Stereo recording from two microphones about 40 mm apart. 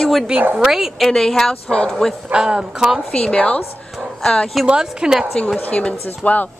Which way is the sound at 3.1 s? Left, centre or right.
Left.